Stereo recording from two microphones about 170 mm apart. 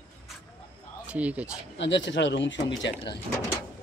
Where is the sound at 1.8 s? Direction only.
90° left.